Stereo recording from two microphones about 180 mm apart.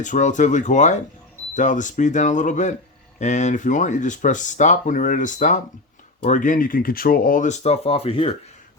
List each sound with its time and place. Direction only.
0.0 s speech: 45° left (ahead or behind)